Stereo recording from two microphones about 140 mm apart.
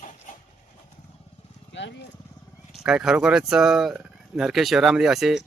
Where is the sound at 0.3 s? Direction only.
70° left (ahead or behind).